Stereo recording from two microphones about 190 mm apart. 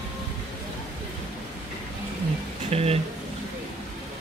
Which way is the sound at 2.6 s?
30° right (ahead or behind).